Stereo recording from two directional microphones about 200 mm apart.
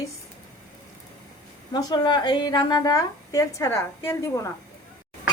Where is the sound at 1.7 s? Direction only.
20° left (ahead or behind).